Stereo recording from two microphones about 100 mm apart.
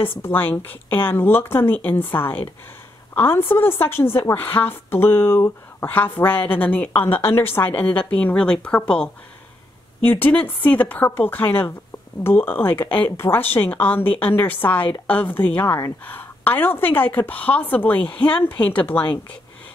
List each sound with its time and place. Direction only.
0.2 s a woman's voice: 20° left (ahead or behind)
6.9 s a woman's voice: 65° left (ahead or behind)
7.2 s a woman's voice: 25° left (ahead or behind)